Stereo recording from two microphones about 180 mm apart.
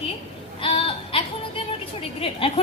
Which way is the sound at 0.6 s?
30° left (ahead or behind).